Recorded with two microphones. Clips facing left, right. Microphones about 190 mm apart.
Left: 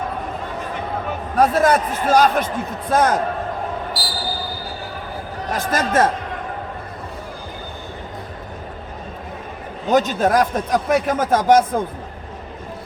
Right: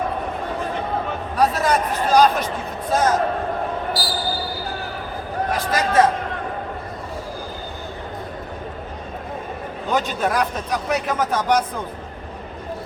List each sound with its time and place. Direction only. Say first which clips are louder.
1.4 s speech: left 4 dB; 50° left (ahead or behind)
4.0 s basketball bounce: right 3 dB; centre (ahead or behind)
5.5 s speech: even; 50° left (ahead or behind)
9.9 s speech: left 5 dB; 45° left (ahead or behind)